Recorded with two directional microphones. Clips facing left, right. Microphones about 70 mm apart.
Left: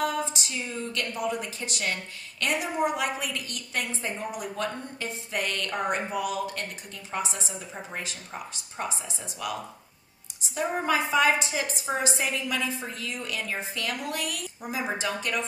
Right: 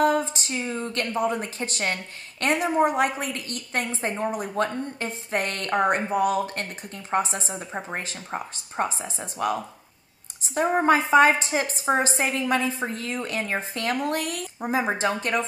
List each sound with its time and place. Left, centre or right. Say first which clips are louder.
0.0 s a woman's voice: right 7 dB; right